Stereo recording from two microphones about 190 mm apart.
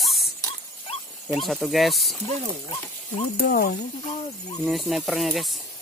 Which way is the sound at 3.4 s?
55° left (ahead or behind).